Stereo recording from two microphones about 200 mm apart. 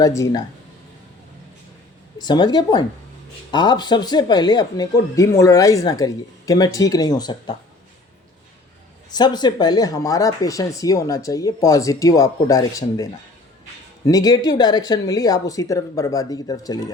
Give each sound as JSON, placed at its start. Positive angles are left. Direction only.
{"t": 0.0, "sound": "speech", "side_deg": 15}
{"t": 2.1, "sound": "speech", "side_deg": 20}
{"t": 9.0, "sound": "speech", "side_deg": 20}